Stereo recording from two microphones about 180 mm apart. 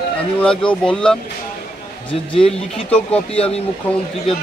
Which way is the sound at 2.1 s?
30° left (ahead or behind).